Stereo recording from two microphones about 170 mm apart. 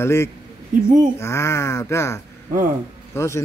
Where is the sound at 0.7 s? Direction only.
50° right (ahead or behind).